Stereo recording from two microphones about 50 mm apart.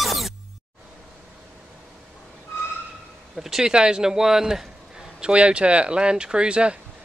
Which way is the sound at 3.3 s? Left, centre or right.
Centre.